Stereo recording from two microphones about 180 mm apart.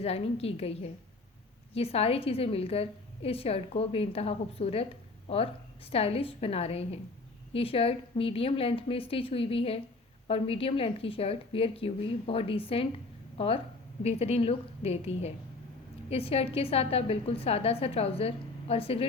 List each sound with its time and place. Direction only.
0.0 s a woman's voice: 35° left (ahead or behind)